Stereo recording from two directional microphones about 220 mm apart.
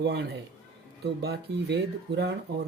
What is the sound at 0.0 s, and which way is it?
Speech, 50° right (ahead or behind).